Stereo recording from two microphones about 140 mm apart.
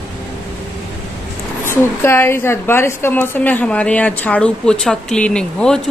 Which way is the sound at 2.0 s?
20° left (ahead or behind).